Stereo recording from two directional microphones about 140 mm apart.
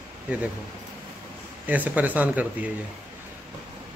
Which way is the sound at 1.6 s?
10° right (ahead or behind).